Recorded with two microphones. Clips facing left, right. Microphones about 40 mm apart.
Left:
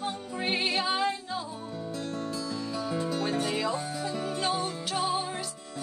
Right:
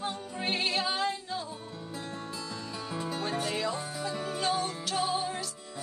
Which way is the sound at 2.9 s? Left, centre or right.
Centre.